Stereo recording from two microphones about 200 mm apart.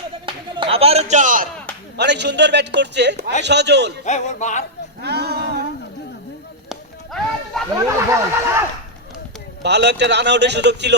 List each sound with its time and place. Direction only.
0.3 s a sound: 30° right (ahead or behind)
2.0 s speech: 60° right (ahead or behind)
4.0 s music: 35° left (ahead or behind)
5.0 s a sound: 55° right (ahead or behind)
6.7 s music: centre (ahead or behind)
7.9 s speech: 15° right (ahead or behind)
9.6 s speech: 60° right (ahead or behind)